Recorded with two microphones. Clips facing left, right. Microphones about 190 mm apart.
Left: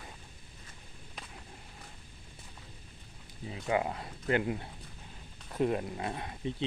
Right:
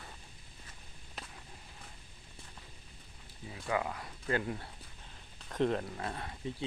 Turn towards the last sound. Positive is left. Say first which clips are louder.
# left 3 dB
turn(degrees=20)  # may be behind; listen again after turning